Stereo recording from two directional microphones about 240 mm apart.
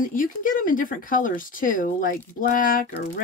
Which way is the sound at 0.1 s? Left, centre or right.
Left.